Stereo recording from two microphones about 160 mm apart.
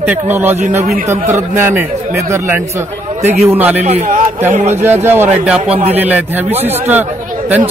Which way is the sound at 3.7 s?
50° right (ahead or behind).